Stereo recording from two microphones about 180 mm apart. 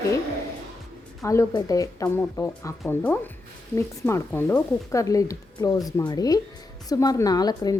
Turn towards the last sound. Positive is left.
turn(degrees=20)  # may be behind; listen again after turning